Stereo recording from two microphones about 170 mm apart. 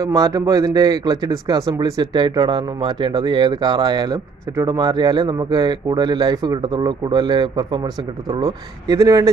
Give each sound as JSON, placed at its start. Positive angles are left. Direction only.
{"t": 0.0, "sound": "speech", "side_deg": -20}